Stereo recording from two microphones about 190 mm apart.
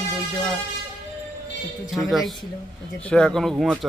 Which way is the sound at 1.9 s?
Centre (ahead or behind).